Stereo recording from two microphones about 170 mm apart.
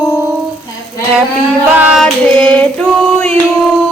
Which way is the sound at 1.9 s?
5° left (ahead or behind).